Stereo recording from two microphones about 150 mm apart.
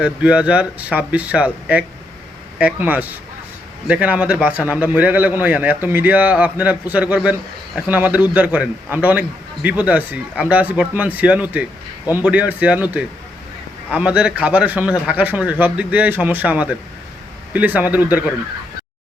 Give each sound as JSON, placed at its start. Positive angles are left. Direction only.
{"t": 0.0, "sound": "a man's voice", "side_deg": -5}